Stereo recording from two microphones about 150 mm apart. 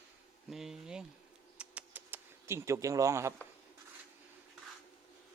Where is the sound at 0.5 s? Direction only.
5° right (ahead or behind).